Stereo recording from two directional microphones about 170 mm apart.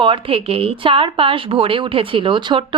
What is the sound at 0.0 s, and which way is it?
Speech, 30° right (ahead or behind).